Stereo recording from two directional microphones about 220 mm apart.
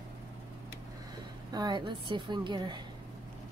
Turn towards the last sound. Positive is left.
turn(degrees=-20)  # may be behind; listen again after turning